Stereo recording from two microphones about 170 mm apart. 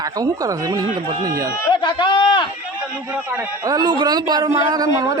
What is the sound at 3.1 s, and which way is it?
Speech, 10° right (ahead or behind).